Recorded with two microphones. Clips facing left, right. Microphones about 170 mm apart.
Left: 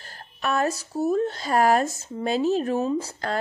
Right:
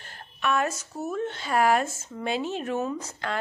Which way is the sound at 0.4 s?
35° left (ahead or behind).